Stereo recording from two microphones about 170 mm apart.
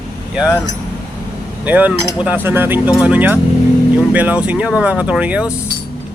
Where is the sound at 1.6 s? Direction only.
10° right (ahead or behind).